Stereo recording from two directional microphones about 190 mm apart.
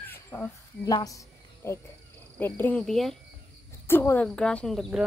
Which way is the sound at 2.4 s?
10° left (ahead or behind).